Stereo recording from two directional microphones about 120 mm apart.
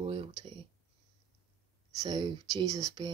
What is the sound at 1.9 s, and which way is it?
Speech, 40° right (ahead or behind).